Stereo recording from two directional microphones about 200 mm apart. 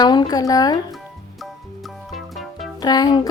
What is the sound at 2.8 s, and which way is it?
Speech, 20° left (ahead or behind).